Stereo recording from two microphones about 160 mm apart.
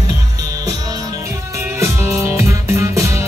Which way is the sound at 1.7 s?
15° right (ahead or behind).